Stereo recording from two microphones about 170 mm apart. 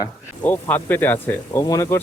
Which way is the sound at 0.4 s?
10° left (ahead or behind).